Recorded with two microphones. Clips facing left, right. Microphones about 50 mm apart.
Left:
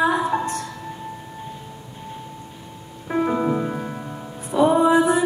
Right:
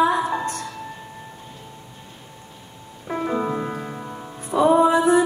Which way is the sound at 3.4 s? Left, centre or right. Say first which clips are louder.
Left 3 dB; centre.